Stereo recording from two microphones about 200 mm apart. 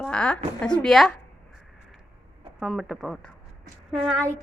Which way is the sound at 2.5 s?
Centre (ahead or behind).